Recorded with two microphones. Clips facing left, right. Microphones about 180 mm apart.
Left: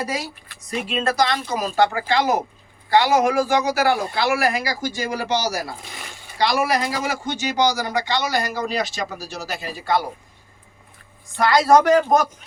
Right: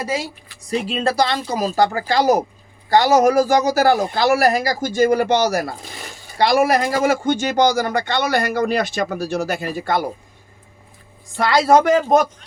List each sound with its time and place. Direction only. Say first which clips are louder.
0.7 s speech: right 3 dB; 35° right (ahead or behind); by 10.0 s 50° right (ahead or behind)
11.3 s speech: right 1 dB; 25° right (ahead or behind)